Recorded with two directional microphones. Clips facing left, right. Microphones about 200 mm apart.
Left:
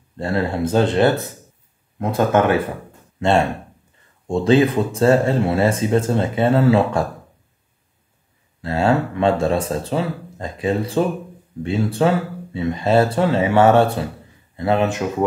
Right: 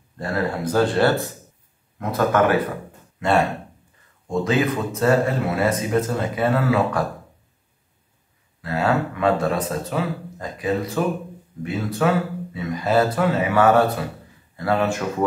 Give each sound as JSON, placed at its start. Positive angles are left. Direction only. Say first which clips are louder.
{"t": 0.2, "sound": "speech", "louder": "left 3 dB", "side_deg": 25}
{"t": 8.5, "sound": "speech", "louder": "left 3 dB", "side_deg": 30}